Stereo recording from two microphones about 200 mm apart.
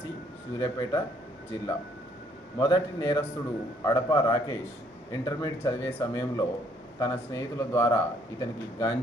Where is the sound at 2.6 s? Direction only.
20° left (ahead or behind).